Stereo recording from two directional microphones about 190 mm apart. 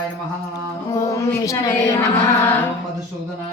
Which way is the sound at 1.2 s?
15° left (ahead or behind).